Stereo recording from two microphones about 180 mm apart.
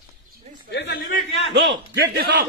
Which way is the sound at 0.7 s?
65° left (ahead or behind).